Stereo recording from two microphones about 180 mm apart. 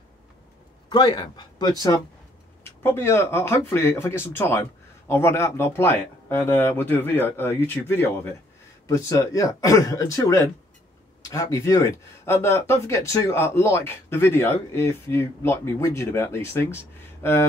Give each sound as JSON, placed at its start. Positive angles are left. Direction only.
{"t": 0.8, "sound": "speech", "side_deg": 25}